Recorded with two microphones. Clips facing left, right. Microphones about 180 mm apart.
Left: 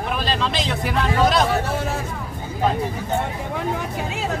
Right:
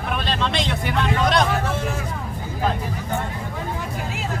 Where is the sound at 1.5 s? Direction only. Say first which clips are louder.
Left 1 dB; 35° left (ahead or behind).